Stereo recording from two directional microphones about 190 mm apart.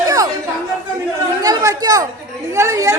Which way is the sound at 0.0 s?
20° right (ahead or behind).